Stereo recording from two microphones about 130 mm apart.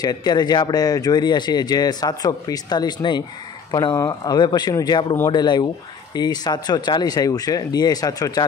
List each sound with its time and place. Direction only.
0.0 s speech: 35° left (ahead or behind)